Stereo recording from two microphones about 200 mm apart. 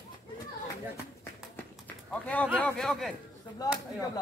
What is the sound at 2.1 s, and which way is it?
A man's voice, 5° left (ahead or behind).